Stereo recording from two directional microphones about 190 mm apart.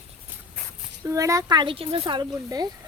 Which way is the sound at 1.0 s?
15° right (ahead or behind).